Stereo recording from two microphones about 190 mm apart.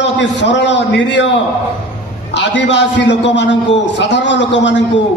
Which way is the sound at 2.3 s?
70° left (ahead or behind).